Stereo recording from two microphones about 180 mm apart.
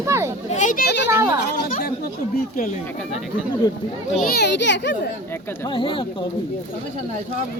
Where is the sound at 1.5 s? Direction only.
50° left (ahead or behind).